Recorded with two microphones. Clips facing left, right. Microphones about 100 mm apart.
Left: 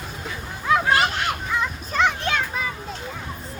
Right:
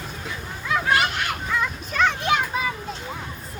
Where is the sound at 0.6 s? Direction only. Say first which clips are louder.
Left 3 dB; 35° left (ahead or behind).